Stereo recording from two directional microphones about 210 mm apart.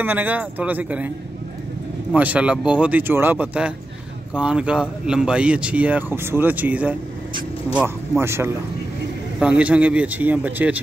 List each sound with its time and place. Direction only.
0.0 s speech: 10° right (ahead or behind)
2.1 s speech: 5° right (ahead or behind)